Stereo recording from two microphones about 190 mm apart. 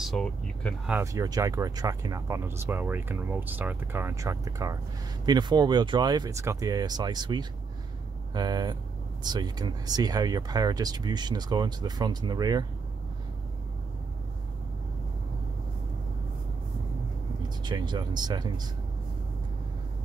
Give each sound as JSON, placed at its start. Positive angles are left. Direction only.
{"t": 0.0, "sound": "speech", "side_deg": 0}
{"t": 0.9, "sound": "speech", "side_deg": -15}
{"t": 17.6, "sound": "speech", "side_deg": -20}